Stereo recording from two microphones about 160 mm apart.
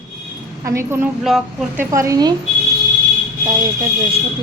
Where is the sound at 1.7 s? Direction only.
15° right (ahead or behind).